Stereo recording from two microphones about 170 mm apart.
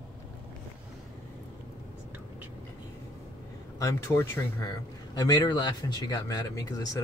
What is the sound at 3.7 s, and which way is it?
Speech, 15° left (ahead or behind).